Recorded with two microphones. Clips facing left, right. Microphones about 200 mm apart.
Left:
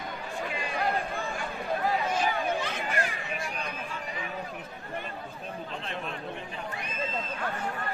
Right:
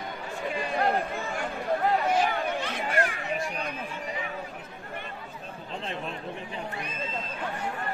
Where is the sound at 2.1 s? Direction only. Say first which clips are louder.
Right 2 dB; 55° right (ahead or behind).